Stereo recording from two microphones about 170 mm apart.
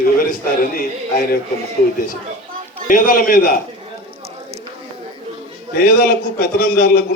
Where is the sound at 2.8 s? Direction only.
55° left (ahead or behind).